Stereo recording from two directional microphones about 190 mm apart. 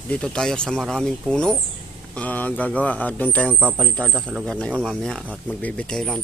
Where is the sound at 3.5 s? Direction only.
5° right (ahead or behind).